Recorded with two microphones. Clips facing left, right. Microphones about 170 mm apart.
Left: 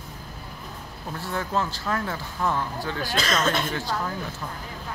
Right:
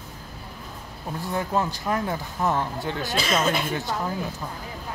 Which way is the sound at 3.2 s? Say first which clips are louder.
Right 1 dB; 10° right (ahead or behind).